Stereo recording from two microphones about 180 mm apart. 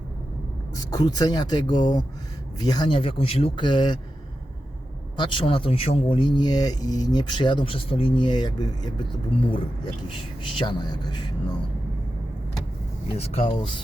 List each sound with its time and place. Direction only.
0.8 s speech: 20° left (ahead or behind)
5.1 s speech: 25° left (ahead or behind)
13.3 s speech: 35° left (ahead or behind)